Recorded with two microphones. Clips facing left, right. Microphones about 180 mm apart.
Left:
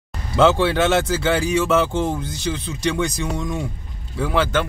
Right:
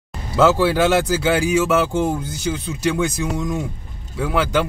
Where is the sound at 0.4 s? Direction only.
5° right (ahead or behind).